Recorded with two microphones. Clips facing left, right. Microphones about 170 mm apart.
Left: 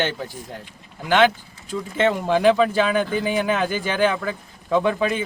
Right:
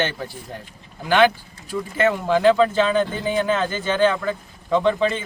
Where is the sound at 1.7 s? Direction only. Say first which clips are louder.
Even; 20° left (ahead or behind).